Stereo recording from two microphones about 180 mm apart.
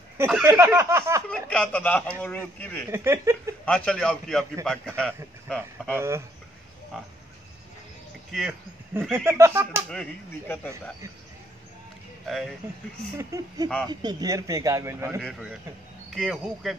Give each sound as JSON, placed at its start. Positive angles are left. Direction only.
{"t": 0.2, "sound": "a man's voice", "side_deg": -15}
{"t": 1.3, "sound": "speech", "side_deg": 5}
{"t": 2.9, "sound": "a man's voice", "side_deg": -15}
{"t": 3.6, "sound": "a man's voice", "side_deg": 5}
{"t": 5.9, "sound": "a man's voice", "side_deg": -15}
{"t": 8.3, "sound": "speech", "side_deg": 0}
{"t": 9.1, "sound": "a man's voice", "side_deg": -15}
{"t": 9.8, "sound": "speech", "side_deg": 5}
{"t": 12.3, "sound": "a man's voice", "side_deg": 0}
{"t": 13.2, "sound": "a man's voice", "side_deg": -20}